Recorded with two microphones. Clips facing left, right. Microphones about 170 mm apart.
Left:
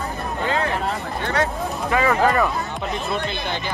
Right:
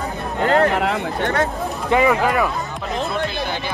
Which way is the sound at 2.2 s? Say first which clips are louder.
Even; 5° right (ahead or behind).